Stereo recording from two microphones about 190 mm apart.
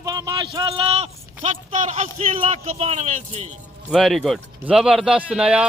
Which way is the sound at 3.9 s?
Centre (ahead or behind).